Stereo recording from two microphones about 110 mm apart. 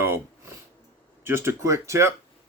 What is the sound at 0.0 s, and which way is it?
Sniff, 25° right (ahead or behind).